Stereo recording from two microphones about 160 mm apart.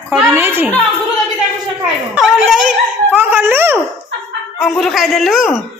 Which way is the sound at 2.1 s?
5° right (ahead or behind).